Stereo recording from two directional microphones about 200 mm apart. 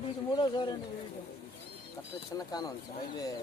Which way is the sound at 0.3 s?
25° left (ahead or behind).